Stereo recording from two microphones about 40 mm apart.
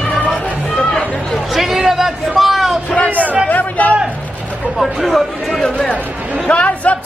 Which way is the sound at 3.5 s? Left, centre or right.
Left.